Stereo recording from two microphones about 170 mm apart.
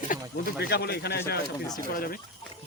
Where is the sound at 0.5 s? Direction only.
70° left (ahead or behind).